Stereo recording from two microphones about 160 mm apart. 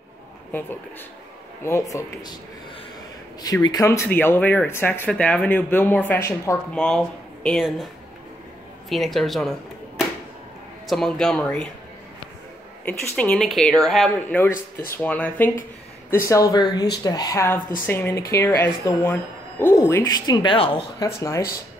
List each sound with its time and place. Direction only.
0.5 s speech: 10° left (ahead or behind)
3.4 s speech: 25° left (ahead or behind)
6.7 s speech: 5° left (ahead or behind)
12.8 s speech: 5° left (ahead or behind); by 20.8 s 35° left (ahead or behind)
21.0 s speech: 20° left (ahead or behind)